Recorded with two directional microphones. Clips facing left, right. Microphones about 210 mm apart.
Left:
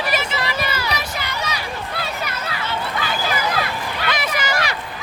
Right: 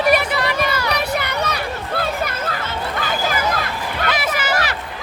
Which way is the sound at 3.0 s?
45° right (ahead or behind).